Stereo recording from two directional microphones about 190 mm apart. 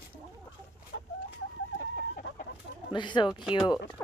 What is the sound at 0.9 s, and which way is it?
Chicken, 70° left (ahead or behind).